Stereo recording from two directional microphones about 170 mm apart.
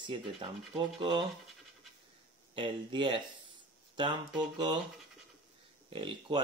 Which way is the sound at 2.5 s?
30° right (ahead or behind).